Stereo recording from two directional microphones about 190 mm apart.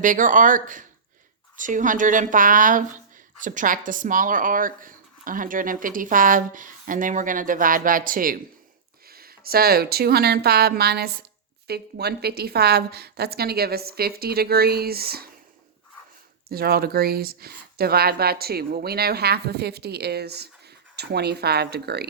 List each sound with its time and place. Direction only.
0.0 s speech: 45° right (ahead or behind)
16.5 s speech: 50° right (ahead or behind)